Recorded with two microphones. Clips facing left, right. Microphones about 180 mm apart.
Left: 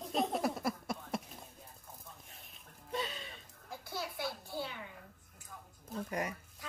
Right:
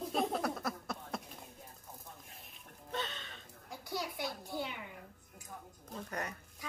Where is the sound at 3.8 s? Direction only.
15° right (ahead or behind).